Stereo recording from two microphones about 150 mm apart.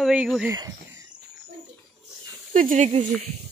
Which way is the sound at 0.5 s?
20° right (ahead or behind).